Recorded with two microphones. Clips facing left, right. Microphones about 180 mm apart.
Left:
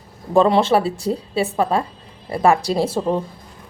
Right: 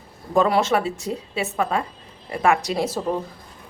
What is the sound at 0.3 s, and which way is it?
A woman's voice, 25° left (ahead or behind).